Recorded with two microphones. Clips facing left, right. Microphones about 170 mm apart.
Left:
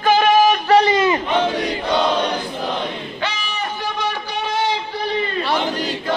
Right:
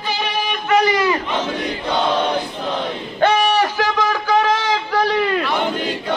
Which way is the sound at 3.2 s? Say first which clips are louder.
Right 13 dB; 60° right (ahead or behind).